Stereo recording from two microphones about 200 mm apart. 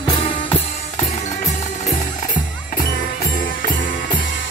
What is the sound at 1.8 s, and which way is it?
Music, 40° left (ahead or behind).